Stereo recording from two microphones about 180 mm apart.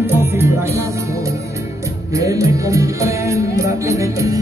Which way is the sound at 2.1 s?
20° right (ahead or behind).